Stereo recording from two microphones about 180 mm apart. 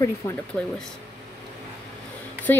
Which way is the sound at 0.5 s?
5° left (ahead or behind).